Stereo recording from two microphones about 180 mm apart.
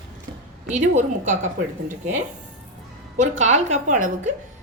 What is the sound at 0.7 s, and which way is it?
Speech, 40° right (ahead or behind).